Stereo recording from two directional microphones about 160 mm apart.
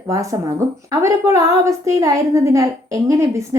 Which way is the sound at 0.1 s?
20° right (ahead or behind).